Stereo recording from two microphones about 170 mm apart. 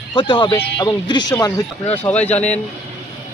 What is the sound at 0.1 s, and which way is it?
Speech, 30° left (ahead or behind).